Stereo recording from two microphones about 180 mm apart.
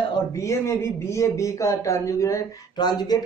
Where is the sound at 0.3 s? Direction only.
15° left (ahead or behind).